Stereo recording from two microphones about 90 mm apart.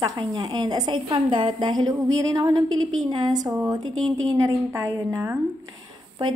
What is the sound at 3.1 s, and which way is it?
Speech, 55° right (ahead or behind).